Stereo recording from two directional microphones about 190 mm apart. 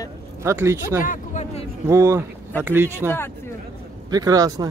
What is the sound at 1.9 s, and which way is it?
Speech, 15° right (ahead or behind).